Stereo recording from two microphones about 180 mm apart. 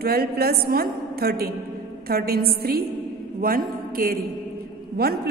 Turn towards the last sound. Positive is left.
turn(degrees=-60)  # may be behind; listen again after turning